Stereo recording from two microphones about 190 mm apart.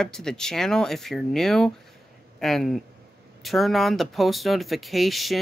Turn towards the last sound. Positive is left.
turn(degrees=0)  # may be behind; listen again after turning